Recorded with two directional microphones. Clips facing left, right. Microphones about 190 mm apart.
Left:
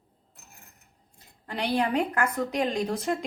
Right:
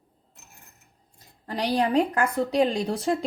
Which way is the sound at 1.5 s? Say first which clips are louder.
Right 2 dB; 35° right (ahead or behind).